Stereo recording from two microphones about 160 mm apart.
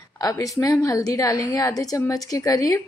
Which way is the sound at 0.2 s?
20° left (ahead or behind).